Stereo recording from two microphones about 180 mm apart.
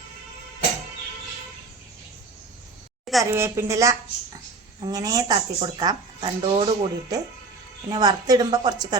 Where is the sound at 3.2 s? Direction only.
15° right (ahead or behind).